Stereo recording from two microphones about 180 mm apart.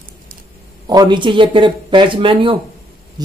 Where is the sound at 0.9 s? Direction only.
25° right (ahead or behind).